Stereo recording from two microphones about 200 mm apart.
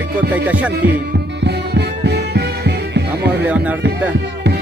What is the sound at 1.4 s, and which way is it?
Music, 55° right (ahead or behind).